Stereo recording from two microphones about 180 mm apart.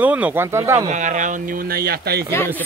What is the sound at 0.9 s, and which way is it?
Speech, 45° right (ahead or behind).